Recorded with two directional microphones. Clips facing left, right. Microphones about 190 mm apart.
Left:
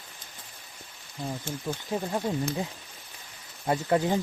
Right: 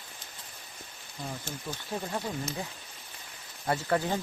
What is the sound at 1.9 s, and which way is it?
Speech, 15° left (ahead or behind).